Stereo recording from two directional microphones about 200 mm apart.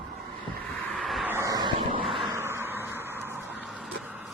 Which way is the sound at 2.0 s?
Centre (ahead or behind).